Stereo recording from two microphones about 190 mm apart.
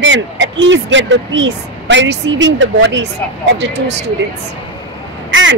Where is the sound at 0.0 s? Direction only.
75° right (ahead or behind).